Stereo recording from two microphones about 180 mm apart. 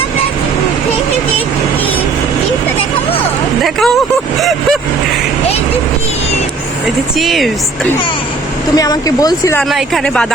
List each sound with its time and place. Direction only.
3.6 s a sound: centre (ahead or behind)
4.4 s vehicle: centre (ahead or behind)
7.2 s speech: centre (ahead or behind)
8.7 s speech: 20° left (ahead or behind)
9.6 s speech: centre (ahead or behind)